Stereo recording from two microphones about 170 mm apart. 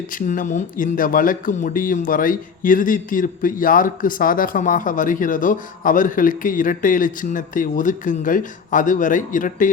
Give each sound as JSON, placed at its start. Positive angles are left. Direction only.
{"t": 0.1, "sound": "speech", "side_deg": 50}